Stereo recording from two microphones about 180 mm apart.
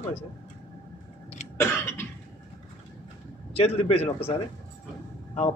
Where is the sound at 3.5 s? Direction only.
35° left (ahead or behind).